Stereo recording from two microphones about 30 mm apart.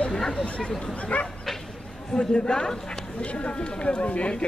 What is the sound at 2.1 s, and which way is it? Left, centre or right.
Speech, left.